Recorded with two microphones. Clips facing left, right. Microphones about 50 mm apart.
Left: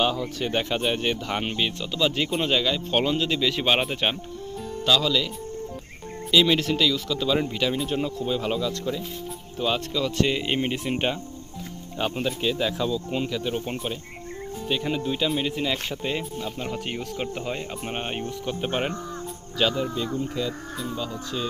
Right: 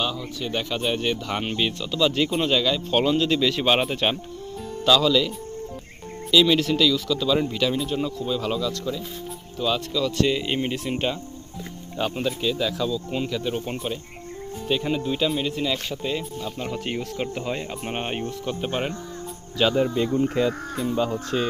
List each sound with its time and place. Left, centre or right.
0.4 s speech: left; by 2.0 s centre
2.0 s speech: centre
6.3 s speech: centre
7.9 s speech: left
13.1 s speech: centre
16.6 s speech: centre
18.6 s speech: centre
19.7 s speech: right
20.1 s speech: right